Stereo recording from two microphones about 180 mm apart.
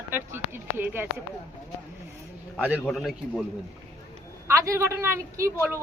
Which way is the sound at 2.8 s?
Centre (ahead or behind).